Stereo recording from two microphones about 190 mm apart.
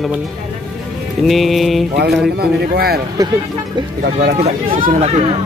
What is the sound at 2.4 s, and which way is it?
Speech, 55° right (ahead or behind).